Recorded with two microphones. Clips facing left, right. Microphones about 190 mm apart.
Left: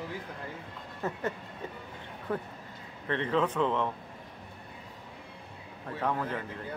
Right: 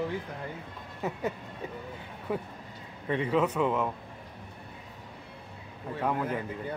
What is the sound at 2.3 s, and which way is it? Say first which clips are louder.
Speech: right 1 dB; 10° right (ahead or behind).